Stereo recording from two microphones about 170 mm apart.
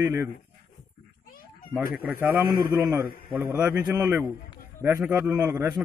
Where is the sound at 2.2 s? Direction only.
15° right (ahead or behind).